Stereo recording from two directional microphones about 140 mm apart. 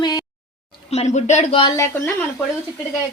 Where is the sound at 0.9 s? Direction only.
55° left (ahead or behind).